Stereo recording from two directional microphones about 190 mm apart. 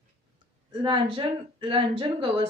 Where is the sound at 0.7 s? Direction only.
25° right (ahead or behind).